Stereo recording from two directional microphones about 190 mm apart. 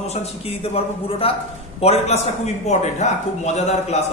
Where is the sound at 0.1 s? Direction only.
30° left (ahead or behind).